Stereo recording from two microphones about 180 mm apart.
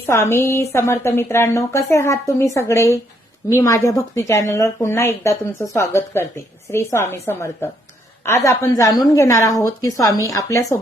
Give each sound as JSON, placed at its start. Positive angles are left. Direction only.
{"t": 0.0, "sound": "a woman's voice", "side_deg": 15}